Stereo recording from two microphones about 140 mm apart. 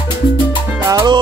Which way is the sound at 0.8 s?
25° right (ahead or behind).